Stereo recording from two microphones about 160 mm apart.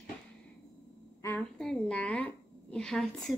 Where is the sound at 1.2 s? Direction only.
20° left (ahead or behind).